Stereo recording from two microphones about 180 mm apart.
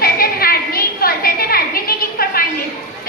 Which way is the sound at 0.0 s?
55° left (ahead or behind).